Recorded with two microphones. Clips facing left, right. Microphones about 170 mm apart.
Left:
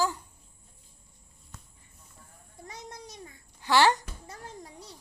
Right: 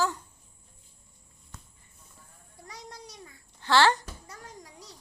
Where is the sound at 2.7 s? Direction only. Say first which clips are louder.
Left 1 dB; 20° left (ahead or behind).